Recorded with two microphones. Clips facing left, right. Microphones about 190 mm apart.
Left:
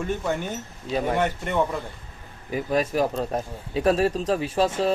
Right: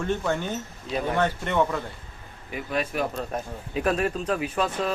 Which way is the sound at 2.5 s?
40° left (ahead or behind).